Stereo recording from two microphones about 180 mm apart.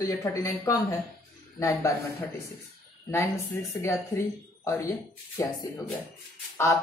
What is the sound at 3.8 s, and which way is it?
A woman's voice, 15° left (ahead or behind).